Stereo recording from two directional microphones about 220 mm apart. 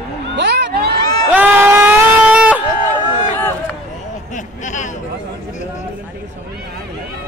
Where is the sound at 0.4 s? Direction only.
50° right (ahead or behind).